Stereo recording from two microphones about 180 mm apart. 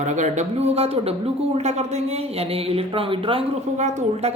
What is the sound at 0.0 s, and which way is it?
A woman's voice, 40° right (ahead or behind).